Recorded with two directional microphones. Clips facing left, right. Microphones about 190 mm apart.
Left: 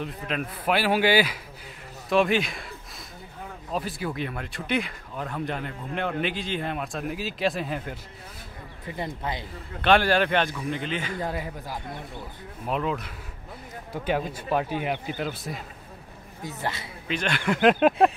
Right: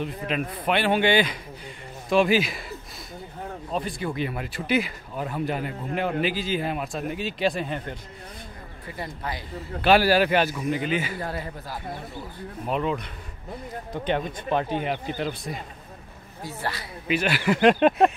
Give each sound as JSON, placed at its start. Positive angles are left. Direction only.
{"t": 0.0, "sound": "speech", "side_deg": 0}
{"t": 3.7, "sound": "speech", "side_deg": 5}
{"t": 8.9, "sound": "speech", "side_deg": 20}
{"t": 9.8, "sound": "speech", "side_deg": -5}
{"t": 11.1, "sound": "speech", "side_deg": 15}
{"t": 12.6, "sound": "speech", "side_deg": 0}
{"t": 16.4, "sound": "speech", "side_deg": 20}
{"t": 17.1, "sound": "speech", "side_deg": -5}